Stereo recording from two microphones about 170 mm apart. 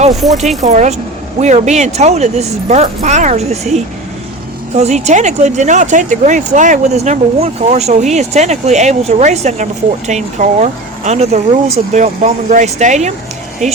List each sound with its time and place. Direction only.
0.2 s speech: centre (ahead or behind)
0.6 s speech: 45° right (ahead or behind)